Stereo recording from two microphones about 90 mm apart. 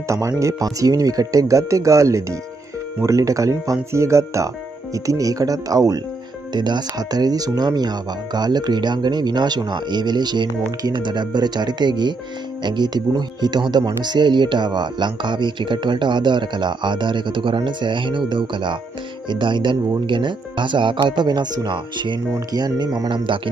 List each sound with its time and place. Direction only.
0.4 s speech: 35° right (ahead or behind)
6.5 s speech: 55° right (ahead or behind)
23.1 s speech: 70° right (ahead or behind)